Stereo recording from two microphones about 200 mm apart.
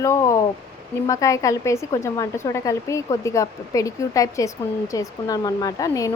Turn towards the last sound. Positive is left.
turn(degrees=15)  # may be behind; listen again after turning